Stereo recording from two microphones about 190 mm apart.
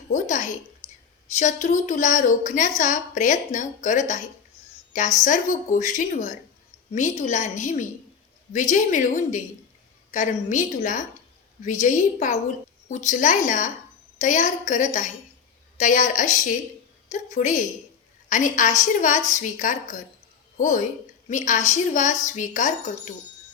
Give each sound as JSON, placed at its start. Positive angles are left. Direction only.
{"t": 0.1, "sound": "a woman's voice", "side_deg": 40}